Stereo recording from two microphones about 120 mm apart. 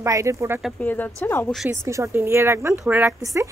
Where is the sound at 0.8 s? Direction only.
15° left (ahead or behind).